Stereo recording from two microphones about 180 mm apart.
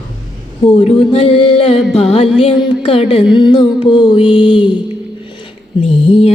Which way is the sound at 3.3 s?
25° left (ahead or behind).